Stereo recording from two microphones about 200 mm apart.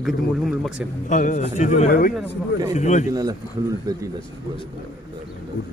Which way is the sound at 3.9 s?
20° right (ahead or behind).